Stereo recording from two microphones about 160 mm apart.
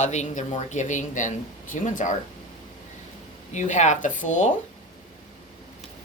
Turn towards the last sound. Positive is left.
turn(degrees=55)  # may be behind; listen again after turning